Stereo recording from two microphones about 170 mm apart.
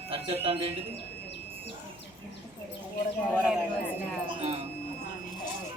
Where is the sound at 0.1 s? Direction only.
35° right (ahead or behind).